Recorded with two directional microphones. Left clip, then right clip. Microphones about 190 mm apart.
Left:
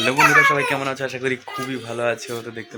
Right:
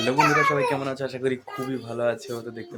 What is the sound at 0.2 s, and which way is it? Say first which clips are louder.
Speech: left 6 dB; 5° right (ahead or behind).